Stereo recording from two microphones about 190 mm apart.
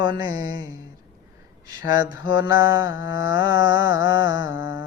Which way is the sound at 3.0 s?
70° left (ahead or behind).